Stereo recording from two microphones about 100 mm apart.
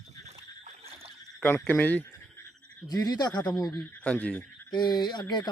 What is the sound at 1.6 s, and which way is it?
Speech, 15° left (ahead or behind).